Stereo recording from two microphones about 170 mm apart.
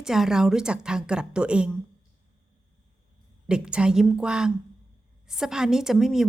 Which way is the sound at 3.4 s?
5° right (ahead or behind).